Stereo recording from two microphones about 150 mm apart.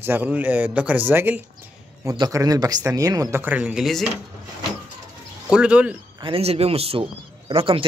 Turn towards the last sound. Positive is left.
turn(degrees=-40)  # may be behind; listen again after turning